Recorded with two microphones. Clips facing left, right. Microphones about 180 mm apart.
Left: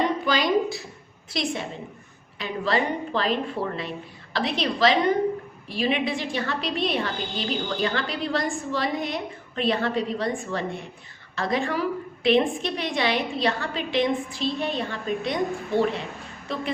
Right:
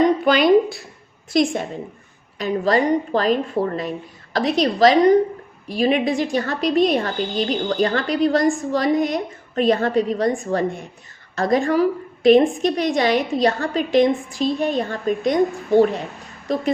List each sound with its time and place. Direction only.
0.3 s speech: 60° right (ahead or behind)
1.3 s a woman's voice: 50° right (ahead or behind)